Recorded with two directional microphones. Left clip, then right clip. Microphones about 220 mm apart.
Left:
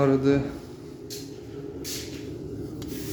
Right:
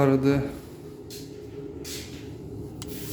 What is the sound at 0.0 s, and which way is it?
Speech, 20° right (ahead or behind).